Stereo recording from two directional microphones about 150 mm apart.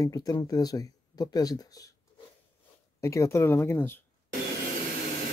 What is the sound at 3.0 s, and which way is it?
Speech, 20° left (ahead or behind).